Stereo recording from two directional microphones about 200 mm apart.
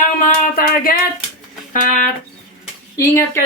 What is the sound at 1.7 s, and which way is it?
Music, 40° left (ahead or behind).